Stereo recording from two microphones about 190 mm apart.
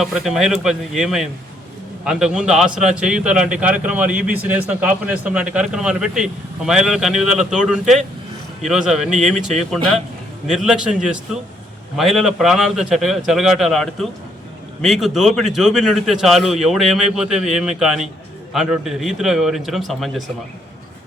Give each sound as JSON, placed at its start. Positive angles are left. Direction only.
{"t": 0.0, "sound": "a man's voice", "side_deg": 0}
{"t": 9.3, "sound": "speech", "side_deg": -40}
{"t": 9.6, "sound": "a man's voice", "side_deg": 0}